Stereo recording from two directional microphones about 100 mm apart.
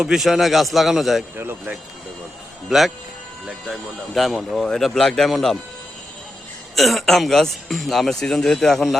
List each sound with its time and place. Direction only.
0.0 s speech: 5° right (ahead or behind)
1.4 s speech: 20° right (ahead or behind)
2.6 s speech: centre (ahead or behind)
6.7 s speech: centre (ahead or behind)